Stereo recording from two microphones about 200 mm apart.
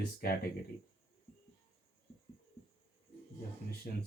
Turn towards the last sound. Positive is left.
turn(degrees=45)  # may be behind; listen again after turning